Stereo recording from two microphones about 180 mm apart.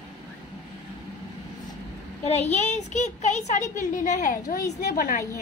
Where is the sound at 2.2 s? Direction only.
40° left (ahead or behind).